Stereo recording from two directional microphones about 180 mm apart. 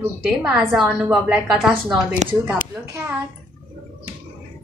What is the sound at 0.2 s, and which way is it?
A woman's voice, 5° right (ahead or behind).